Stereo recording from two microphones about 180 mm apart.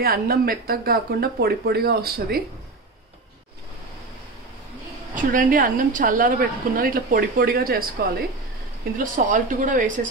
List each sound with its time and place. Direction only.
0.0 s speech: 60° right (ahead or behind)
5.1 s a woman's voice: 50° right (ahead or behind)
8.9 s a woman's voice: 45° right (ahead or behind)